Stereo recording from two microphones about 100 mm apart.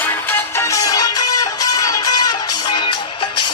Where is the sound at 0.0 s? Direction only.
20° left (ahead or behind).